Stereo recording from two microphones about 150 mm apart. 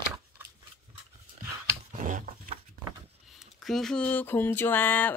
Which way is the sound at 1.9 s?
60° right (ahead or behind).